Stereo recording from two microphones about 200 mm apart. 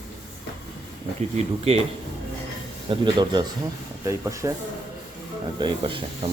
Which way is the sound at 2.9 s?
20° right (ahead or behind).